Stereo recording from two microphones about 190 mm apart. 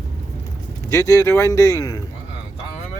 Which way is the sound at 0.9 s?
15° left (ahead or behind).